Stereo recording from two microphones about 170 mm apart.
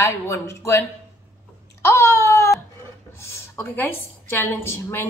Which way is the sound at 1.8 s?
15° left (ahead or behind).